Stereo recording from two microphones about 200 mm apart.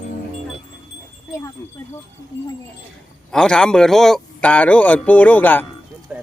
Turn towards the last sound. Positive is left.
turn(degrees=10)  # may be behind; listen again after turning